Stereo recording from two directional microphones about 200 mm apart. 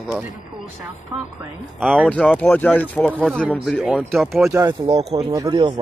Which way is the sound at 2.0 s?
5° left (ahead or behind).